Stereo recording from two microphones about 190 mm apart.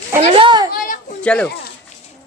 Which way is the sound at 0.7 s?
45° left (ahead or behind).